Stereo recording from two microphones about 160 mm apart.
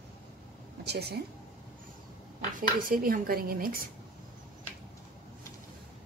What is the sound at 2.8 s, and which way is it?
A woman's voice, 60° right (ahead or behind).